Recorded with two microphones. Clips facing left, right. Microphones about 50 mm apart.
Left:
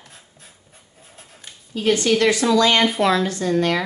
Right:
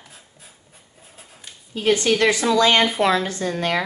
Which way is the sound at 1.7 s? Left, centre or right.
Centre.